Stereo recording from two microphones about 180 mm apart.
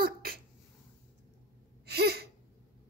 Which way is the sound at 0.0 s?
55° right (ahead or behind).